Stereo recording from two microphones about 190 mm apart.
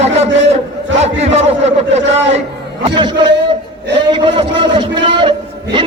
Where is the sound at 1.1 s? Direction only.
35° right (ahead or behind).